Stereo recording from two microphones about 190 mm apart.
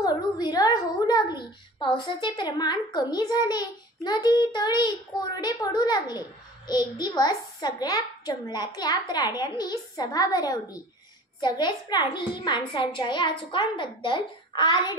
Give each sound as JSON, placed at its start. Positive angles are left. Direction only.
{"t": 0.0, "sound": "a child's voice", "side_deg": 20}